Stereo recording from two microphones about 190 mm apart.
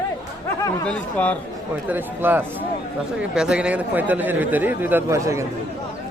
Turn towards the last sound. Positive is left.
turn(degrees=-15)  # may be behind; listen again after turning